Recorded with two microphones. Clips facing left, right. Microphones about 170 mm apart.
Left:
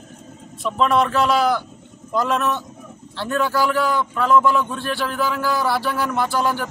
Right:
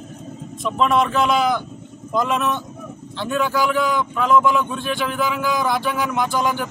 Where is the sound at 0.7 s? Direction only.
10° right (ahead or behind).